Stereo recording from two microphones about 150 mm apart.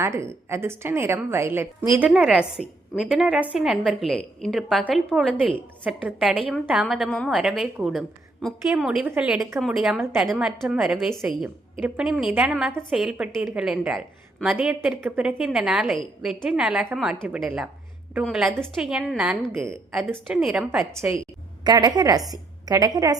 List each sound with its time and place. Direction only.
0.0 s a woman's voice: 20° right (ahead or behind)
2.0 s a woman's voice: 5° right (ahead or behind)
21.6 s a woman's voice: 25° right (ahead or behind)